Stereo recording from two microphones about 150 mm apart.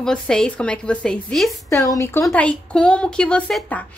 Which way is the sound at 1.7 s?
20° left (ahead or behind).